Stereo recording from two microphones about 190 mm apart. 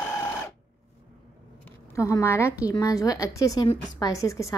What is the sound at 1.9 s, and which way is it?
A woman's voice, 15° left (ahead or behind).